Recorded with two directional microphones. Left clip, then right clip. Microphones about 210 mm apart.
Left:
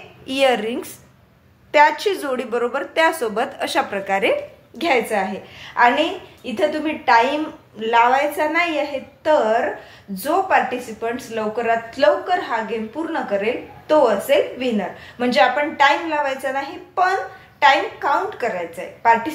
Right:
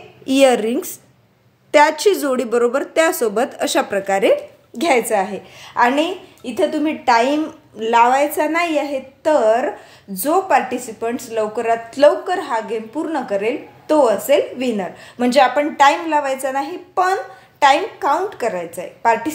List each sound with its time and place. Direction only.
0.4 s speech: 60° right (ahead or behind)